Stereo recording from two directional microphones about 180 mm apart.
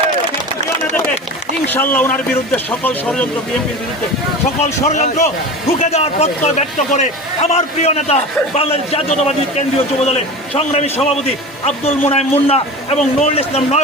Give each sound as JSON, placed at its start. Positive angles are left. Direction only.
{"t": 1.6, "sound": "a man's voice", "side_deg": 10}
{"t": 4.9, "sound": "a man's voice", "side_deg": 40}